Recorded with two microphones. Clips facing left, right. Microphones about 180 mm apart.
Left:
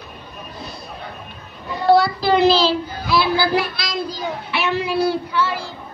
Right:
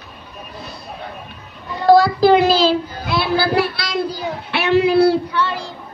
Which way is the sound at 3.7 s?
65° right (ahead or behind).